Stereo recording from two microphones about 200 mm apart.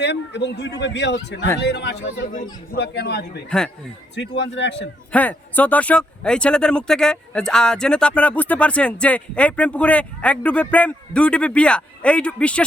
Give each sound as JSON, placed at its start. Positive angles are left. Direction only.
{"t": 0.0, "sound": "speech", "side_deg": 60}
{"t": 3.5, "sound": "speech", "side_deg": 5}
{"t": 4.1, "sound": "speech", "side_deg": 60}
{"t": 5.1, "sound": "speech", "side_deg": 10}